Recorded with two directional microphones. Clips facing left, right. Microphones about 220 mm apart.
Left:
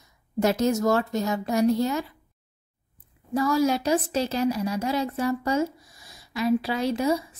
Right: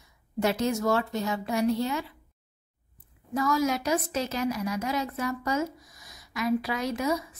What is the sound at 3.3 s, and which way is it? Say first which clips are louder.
A woman's voice: left 4 dB; 30° left (ahead or behind).